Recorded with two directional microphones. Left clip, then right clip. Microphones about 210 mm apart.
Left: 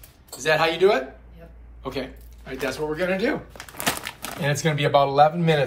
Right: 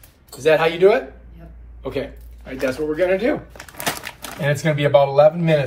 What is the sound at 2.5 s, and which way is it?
Speech, 15° left (ahead or behind).